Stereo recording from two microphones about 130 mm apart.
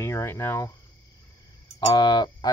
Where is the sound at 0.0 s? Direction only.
20° left (ahead or behind).